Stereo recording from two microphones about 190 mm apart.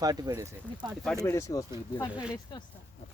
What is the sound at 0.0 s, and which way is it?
Speech, 20° right (ahead or behind).